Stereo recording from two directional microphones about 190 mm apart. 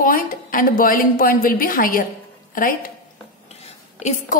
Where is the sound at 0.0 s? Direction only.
45° left (ahead or behind).